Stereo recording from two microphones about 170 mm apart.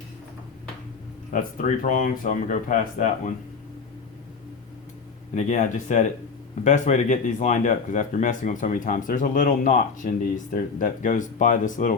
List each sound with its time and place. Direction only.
1.3 s speech: 50° left (ahead or behind)
5.3 s speech: 45° left (ahead or behind)